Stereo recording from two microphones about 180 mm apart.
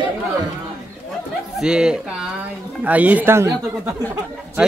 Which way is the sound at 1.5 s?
5° right (ahead or behind).